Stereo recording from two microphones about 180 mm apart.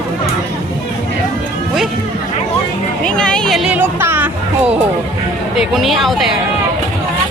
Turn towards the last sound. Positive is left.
turn(degrees=0)  # may be behind; listen again after turning